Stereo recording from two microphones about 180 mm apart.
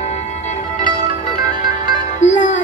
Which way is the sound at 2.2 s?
40° left (ahead or behind).